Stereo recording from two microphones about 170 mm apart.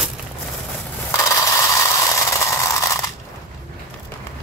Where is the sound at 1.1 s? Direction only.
15° left (ahead or behind).